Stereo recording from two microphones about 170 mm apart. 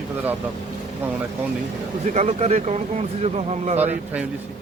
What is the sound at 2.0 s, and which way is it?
Speech, 40° right (ahead or behind).